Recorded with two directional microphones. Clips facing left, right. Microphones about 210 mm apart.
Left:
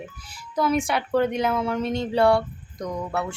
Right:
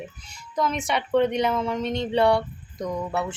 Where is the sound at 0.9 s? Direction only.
5° left (ahead or behind).